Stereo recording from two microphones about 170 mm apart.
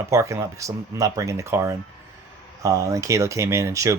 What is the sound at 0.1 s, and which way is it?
Speech, 15° right (ahead or behind).